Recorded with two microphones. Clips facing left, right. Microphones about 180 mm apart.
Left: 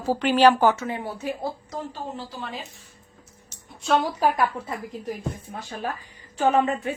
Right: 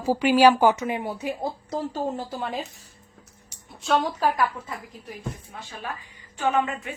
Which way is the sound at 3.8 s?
Centre (ahead or behind).